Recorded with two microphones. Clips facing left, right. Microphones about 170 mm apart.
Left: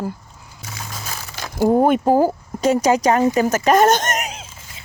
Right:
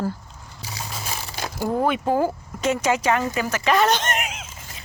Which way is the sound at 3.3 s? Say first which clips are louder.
Left 6 dB; 45° left (ahead or behind).